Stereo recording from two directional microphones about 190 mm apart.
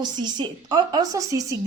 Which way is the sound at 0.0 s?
20° right (ahead or behind).